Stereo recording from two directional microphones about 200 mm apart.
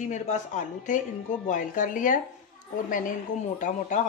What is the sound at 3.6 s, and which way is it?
Speech, 40° left (ahead or behind).